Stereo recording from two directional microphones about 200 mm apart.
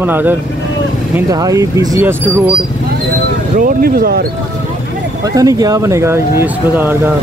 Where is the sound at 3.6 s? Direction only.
45° right (ahead or behind).